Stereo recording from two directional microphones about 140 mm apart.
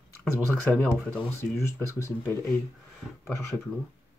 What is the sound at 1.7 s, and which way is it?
Speech, 20° left (ahead or behind).